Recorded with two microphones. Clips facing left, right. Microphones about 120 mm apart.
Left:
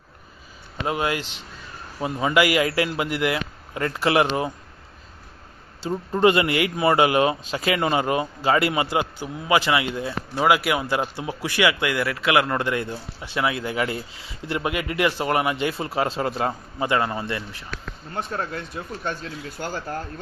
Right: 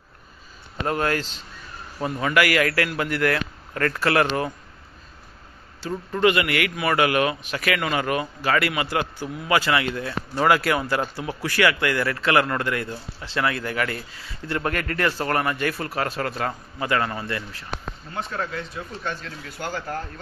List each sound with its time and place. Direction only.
0.8 s a man's voice: 10° left (ahead or behind)
5.9 s a man's voice: 25° left (ahead or behind)
18.1 s speech: 45° left (ahead or behind)